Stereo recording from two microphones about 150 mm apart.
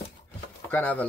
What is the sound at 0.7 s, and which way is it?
Speech, 10° left (ahead or behind).